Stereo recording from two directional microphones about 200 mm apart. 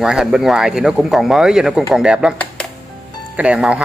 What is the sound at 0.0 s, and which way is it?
Speech, 5° right (ahead or behind).